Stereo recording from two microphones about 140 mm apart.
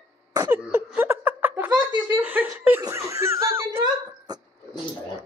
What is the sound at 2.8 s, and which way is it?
Snicker, 20° right (ahead or behind).